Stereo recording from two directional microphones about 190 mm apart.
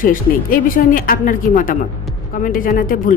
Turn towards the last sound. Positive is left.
turn(degrees=45)  # may be behind; listen again after turning